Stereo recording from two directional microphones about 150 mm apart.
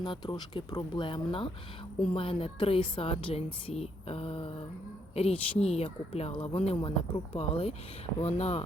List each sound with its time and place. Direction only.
0.0 s a woman's voice: 30° left (ahead or behind)